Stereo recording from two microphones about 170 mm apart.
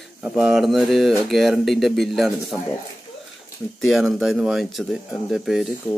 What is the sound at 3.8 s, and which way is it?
A man's voice, centre (ahead or behind).